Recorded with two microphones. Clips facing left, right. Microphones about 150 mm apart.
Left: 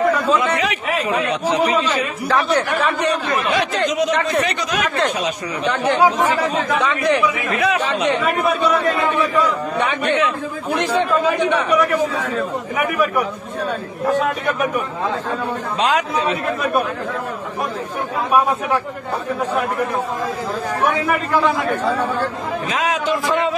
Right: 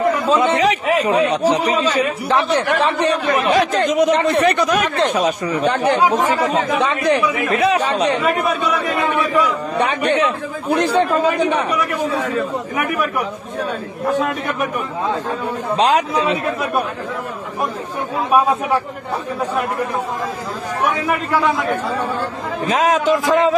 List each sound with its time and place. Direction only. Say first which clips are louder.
0.3 s a man's voice: right 3 dB; 30° right (ahead or behind)
2.2 s speech: left 2 dB; 25° right (ahead or behind)
3.4 s speech: right 4 dB; 40° right (ahead or behind)
4.1 s speech: right 4 dB; 30° right (ahead or behind)
4.5 s speech: right 6 dB; 50° right (ahead or behind)
5.1 s a man's voice: right 5 dB; 40° right (ahead or behind)
9.8 s a man's voice: right 3 dB; 35° right (ahead or behind)
15.8 s a man's voice: right 3 dB; 35° right (ahead or behind)
22.7 s a man's voice: right 6 dB; 40° right (ahead or behind)